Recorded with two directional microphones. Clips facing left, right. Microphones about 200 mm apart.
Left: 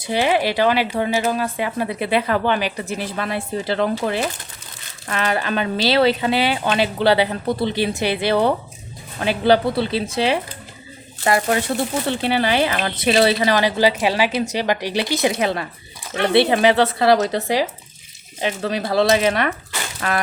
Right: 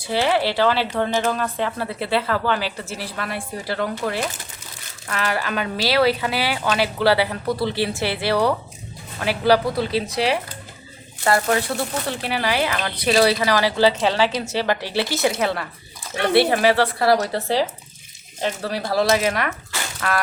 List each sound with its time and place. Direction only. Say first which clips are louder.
0.0 s speech: left 1 dB; 15° left (ahead or behind)